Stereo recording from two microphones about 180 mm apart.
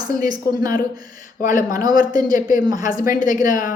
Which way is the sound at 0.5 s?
50° left (ahead or behind).